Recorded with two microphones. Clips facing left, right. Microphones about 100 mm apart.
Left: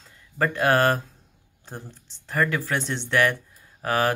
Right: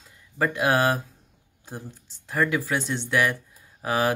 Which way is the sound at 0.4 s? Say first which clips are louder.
Left 2 dB; 10° right (ahead or behind).